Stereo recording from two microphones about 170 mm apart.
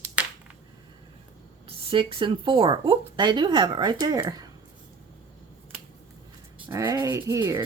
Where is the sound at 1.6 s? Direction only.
35° right (ahead or behind).